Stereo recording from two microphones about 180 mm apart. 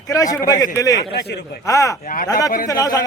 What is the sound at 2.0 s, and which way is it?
Speech, 50° left (ahead or behind).